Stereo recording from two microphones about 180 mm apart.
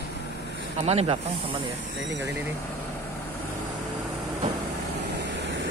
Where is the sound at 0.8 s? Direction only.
35° right (ahead or behind).